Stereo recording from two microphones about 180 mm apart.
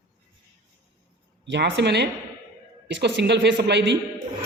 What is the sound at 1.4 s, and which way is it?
A man's voice, 75° right (ahead or behind).